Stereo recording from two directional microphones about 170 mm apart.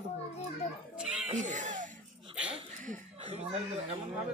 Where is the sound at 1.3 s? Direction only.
45° right (ahead or behind).